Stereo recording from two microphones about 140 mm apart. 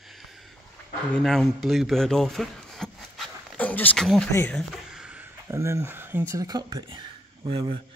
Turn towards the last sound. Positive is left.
turn(degrees=-35)  # may be behind; listen again after turning